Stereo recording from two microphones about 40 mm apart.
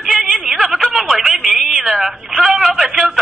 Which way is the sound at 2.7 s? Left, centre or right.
Centre.